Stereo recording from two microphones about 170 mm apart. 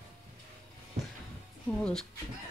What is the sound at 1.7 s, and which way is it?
Speech, 5° left (ahead or behind).